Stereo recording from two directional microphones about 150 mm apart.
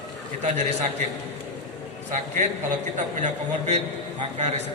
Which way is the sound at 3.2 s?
55° right (ahead or behind).